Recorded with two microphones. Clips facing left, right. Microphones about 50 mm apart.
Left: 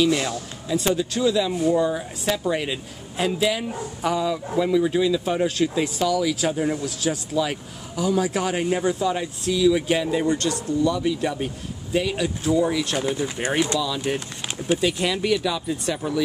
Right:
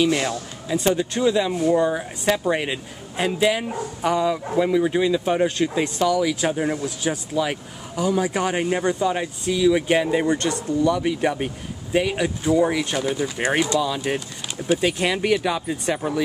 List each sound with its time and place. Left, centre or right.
0.0 s a man's voice: centre
5.9 s speech: centre
6.5 s a man's voice: right